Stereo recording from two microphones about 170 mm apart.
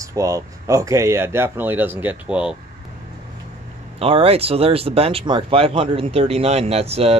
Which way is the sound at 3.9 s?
35° right (ahead or behind).